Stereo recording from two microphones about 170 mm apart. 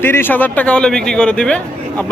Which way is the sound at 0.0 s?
15° left (ahead or behind).